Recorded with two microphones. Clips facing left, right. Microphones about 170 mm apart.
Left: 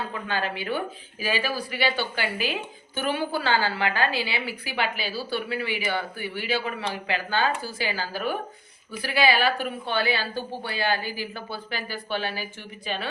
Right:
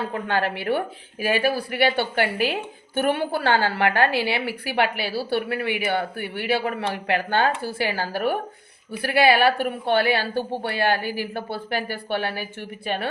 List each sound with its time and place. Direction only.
0.1 s a woman's voice: 65° right (ahead or behind)